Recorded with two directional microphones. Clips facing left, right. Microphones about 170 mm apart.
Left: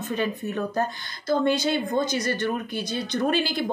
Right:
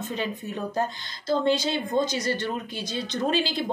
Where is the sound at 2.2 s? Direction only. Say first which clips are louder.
Left 2 dB; 55° left (ahead or behind).